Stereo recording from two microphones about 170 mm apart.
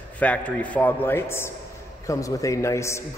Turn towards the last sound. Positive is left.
turn(degrees=15)  # may be behind; listen again after turning